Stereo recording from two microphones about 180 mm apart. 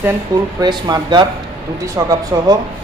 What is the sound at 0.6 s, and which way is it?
A man's voice, 25° right (ahead or behind).